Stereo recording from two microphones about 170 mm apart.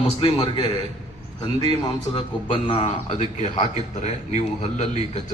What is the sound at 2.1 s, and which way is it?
A man's voice, 30° left (ahead or behind).